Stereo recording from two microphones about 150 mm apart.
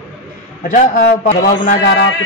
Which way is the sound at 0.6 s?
60° left (ahead or behind).